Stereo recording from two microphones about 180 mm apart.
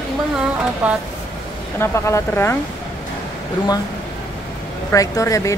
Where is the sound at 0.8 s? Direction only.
5° right (ahead or behind).